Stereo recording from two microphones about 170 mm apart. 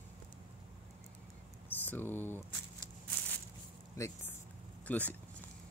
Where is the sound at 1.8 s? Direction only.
10° left (ahead or behind).